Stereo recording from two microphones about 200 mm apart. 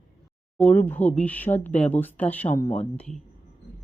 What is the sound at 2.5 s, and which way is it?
Speech, 35° left (ahead or behind).